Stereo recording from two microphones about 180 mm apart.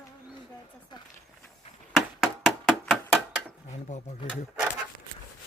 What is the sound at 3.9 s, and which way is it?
Speech, 40° left (ahead or behind).